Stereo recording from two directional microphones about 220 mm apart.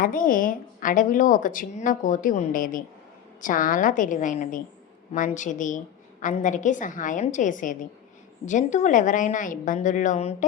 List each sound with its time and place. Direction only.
0.0 s a woman's voice: 40° left (ahead or behind)